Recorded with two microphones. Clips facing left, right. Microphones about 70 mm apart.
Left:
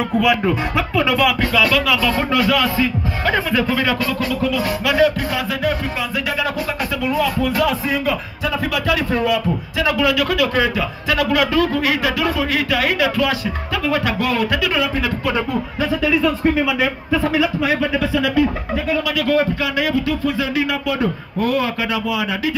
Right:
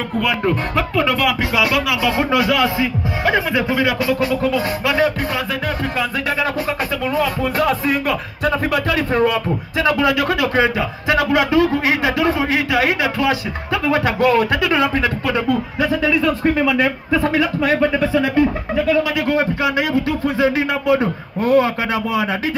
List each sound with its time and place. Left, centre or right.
0.2 s speech: centre
1.4 s speech: right
4.3 s speech: right
7.1 s speech: right
7.8 s speech: right
8.7 s speech: right
18.0 s speech: right